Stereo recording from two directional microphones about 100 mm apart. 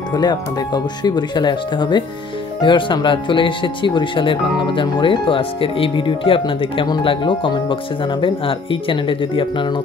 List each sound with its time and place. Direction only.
0.1 s speech: 45° left (ahead or behind); by 9.7 s 60° left (ahead or behind)